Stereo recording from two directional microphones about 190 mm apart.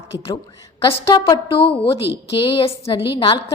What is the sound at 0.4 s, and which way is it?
A woman's voice, 15° left (ahead or behind).